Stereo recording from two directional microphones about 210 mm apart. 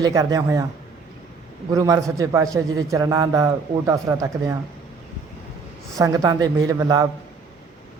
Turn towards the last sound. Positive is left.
turn(degrees=-15)  # may be behind; listen again after turning